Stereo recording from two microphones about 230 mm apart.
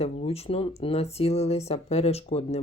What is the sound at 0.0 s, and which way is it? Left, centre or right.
Speech, left.